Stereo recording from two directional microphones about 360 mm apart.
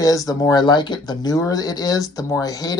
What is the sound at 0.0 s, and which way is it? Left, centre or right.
Speech, centre.